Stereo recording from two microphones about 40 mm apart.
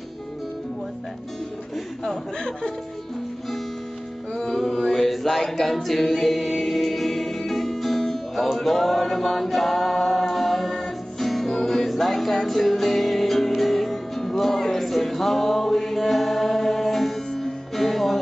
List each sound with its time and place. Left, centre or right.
2.3 s speech: left
4.3 s a capella: centre
13.6 s music: centre